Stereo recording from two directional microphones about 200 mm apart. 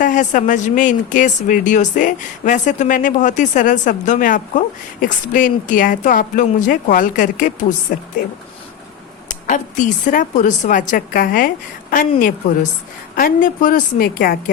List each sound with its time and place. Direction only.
0.0 s speech: 40° left (ahead or behind)
9.3 s speech: 40° left (ahead or behind)